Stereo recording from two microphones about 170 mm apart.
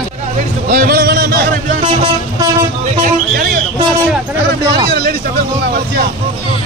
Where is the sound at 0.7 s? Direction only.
55° right (ahead or behind).